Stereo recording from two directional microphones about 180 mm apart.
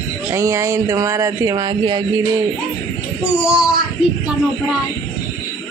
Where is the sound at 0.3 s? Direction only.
15° right (ahead or behind).